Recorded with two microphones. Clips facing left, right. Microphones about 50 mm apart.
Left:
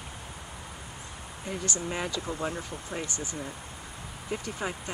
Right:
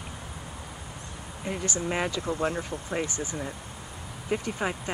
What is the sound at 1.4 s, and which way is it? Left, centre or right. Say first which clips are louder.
Speech: right 3 dB; right.